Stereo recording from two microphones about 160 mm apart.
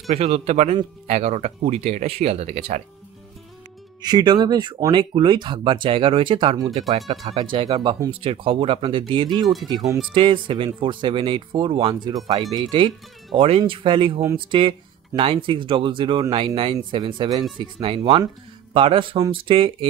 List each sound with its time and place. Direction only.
0.1 s speech: 40° right (ahead or behind)
4.0 s speech: 25° right (ahead or behind)